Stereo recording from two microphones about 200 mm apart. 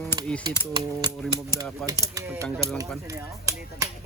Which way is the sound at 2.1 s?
15° right (ahead or behind).